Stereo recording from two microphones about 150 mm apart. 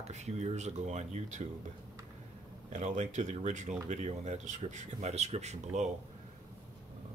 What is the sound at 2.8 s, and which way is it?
Speech, 50° right (ahead or behind).